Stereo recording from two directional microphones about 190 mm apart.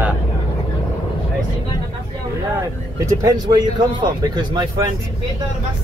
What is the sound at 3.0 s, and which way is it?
Speech, 20° right (ahead or behind).